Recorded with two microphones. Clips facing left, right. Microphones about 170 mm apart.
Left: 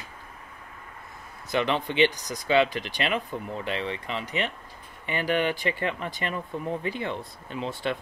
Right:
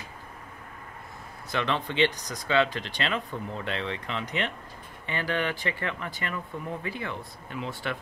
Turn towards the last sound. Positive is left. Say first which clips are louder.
# left 3 dB
turn(degrees=25)  # may be behind; listen again after turning